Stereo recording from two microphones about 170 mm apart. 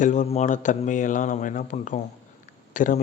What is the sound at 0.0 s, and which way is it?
A man's voice, 45° left (ahead or behind).